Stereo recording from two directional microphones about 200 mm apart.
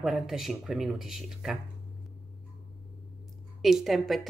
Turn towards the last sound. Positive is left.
turn(degrees=0)  # may be behind; listen again after turning